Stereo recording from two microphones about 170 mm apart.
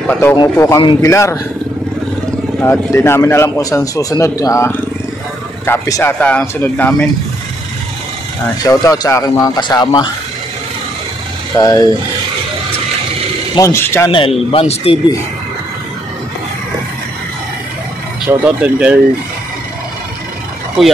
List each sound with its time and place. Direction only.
0.0 s a man's voice: 10° left (ahead or behind)
2.6 s a man's voice: 10° left (ahead or behind)
8.6 s speech: 20° left (ahead or behind)
11.6 s speech: 20° left (ahead or behind)
13.6 s a man's voice: 15° left (ahead or behind)
14.1 s speech: 35° left (ahead or behind)
18.3 s speech: 10° right (ahead or behind)